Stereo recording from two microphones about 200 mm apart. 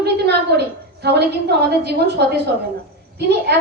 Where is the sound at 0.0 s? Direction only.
55° right (ahead or behind).